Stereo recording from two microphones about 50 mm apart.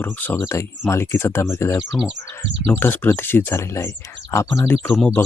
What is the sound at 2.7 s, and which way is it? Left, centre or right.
Speech, left.